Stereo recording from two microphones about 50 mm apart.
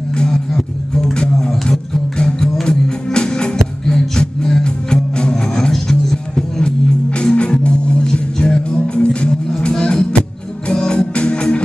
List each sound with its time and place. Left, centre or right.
0.1 s music: centre
7.2 s music: left